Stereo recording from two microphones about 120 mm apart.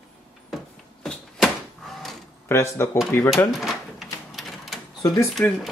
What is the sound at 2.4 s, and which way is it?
Speech, 20° left (ahead or behind).